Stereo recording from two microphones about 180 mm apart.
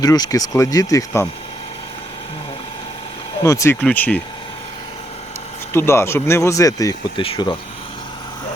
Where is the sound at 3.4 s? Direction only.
15° left (ahead or behind).